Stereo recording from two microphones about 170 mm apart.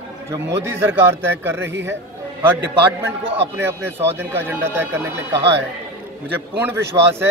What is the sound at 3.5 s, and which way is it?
A man's voice, 15° right (ahead or behind).